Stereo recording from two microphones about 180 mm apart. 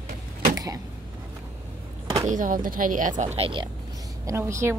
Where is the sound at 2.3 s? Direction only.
50° right (ahead or behind); by 3.7 s 30° right (ahead or behind).